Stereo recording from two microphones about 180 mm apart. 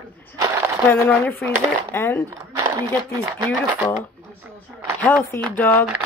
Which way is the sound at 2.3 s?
20° right (ahead or behind).